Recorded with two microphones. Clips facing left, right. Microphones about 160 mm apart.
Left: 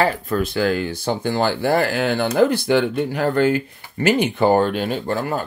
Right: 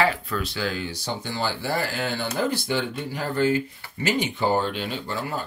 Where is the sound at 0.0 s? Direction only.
50° left (ahead or behind).